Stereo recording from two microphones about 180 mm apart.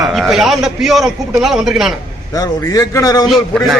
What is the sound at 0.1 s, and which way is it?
A man's voice, centre (ahead or behind).